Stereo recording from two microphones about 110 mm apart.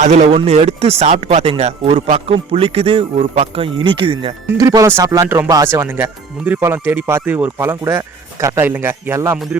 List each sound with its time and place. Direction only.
0.0 s speech: 90° right
1.9 s speech: 65° right (ahead or behind)
4.5 s speech: 35° right (ahead or behind)